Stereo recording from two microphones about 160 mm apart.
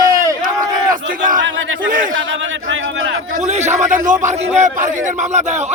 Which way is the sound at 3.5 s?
45° right (ahead or behind).